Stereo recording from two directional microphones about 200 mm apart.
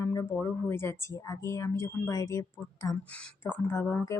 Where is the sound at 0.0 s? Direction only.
15° left (ahead or behind).